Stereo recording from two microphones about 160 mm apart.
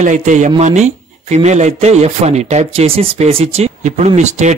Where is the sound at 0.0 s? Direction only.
50° right (ahead or behind).